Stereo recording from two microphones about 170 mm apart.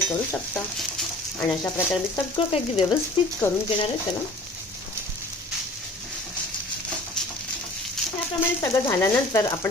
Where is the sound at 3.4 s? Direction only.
10° left (ahead or behind).